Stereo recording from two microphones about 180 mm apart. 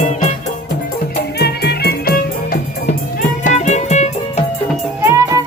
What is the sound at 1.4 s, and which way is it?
Music, 60° left (ahead or behind).